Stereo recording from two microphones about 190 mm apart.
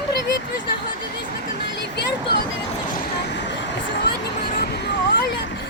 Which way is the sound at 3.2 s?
65° left (ahead or behind).